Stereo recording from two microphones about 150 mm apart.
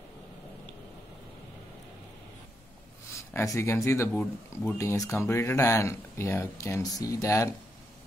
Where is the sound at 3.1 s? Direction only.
20° left (ahead or behind).